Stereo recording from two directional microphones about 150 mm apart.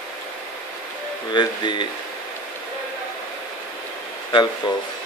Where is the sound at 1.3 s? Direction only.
30° left (ahead or behind).